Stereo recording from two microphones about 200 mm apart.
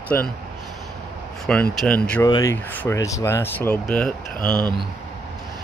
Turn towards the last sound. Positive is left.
turn(degrees=-20)  # may be behind; listen again after turning